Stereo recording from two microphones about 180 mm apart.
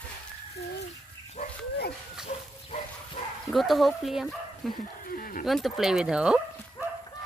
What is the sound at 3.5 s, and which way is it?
Speech, centre (ahead or behind).